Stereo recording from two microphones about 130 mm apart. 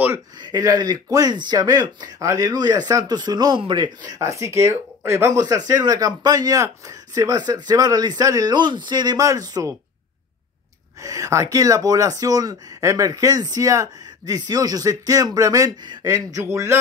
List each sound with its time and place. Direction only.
0.4 s speech: 30° right (ahead or behind)
11.0 s speech: 25° right (ahead or behind)